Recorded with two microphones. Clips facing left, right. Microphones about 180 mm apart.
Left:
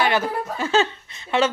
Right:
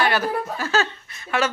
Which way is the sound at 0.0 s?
20° left (ahead or behind).